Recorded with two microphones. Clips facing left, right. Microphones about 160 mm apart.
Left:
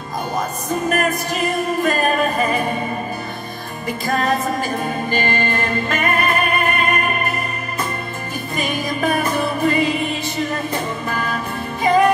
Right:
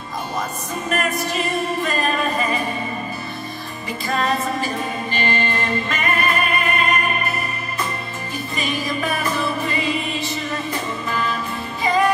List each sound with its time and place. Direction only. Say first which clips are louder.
0.8 s music: left 2 dB; 45° left (ahead or behind)
4.1 s music: left 2 dB; 45° left (ahead or behind)
8.5 s music: left 2 dB; 50° left (ahead or behind)
11.1 s music: left 1 dB; 50° left (ahead or behind)